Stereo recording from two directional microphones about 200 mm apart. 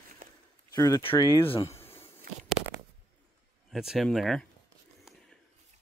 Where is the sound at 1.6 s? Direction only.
15° left (ahead or behind).